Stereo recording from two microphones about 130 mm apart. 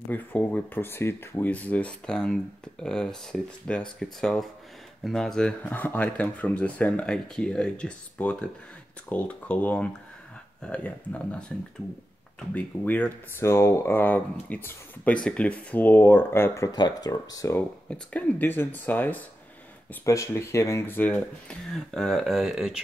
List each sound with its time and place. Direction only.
0.1 s speech: 15° left (ahead or behind)
12.5 s speech: 15° left (ahead or behind)
16.7 s speech: 30° left (ahead or behind)
17.8 s speech: 10° left (ahead or behind)
20.1 s speech: 25° left (ahead or behind); by 22.8 s centre (ahead or behind)